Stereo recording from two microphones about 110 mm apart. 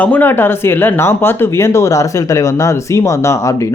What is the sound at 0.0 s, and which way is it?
Speech, 15° left (ahead or behind).